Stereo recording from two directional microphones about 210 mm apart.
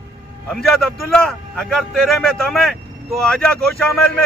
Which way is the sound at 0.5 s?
Centre (ahead or behind).